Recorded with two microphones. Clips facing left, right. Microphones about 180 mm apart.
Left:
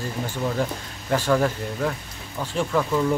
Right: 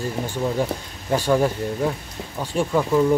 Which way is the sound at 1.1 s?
15° right (ahead or behind).